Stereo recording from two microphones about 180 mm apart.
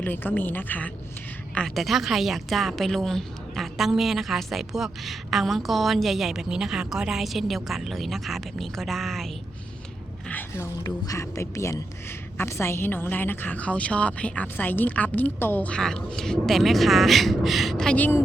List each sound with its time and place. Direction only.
0.0 s a woman's voice: 10° left (ahead or behind)
10.2 s a sound: 10° left (ahead or behind)
10.8 s a woman's voice: 20° left (ahead or behind)